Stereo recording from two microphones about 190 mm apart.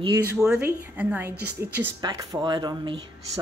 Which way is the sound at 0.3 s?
10° right (ahead or behind).